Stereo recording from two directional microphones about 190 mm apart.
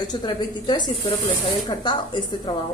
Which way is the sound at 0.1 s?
20° left (ahead or behind).